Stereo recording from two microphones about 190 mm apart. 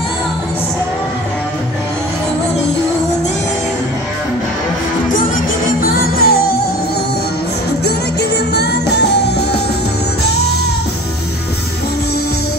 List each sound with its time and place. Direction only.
5.8 s music: 55° left (ahead or behind)
7.8 s music: 60° left (ahead or behind)